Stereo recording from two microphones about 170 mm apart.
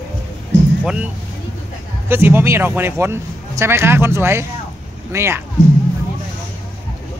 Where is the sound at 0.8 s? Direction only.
5° right (ahead or behind).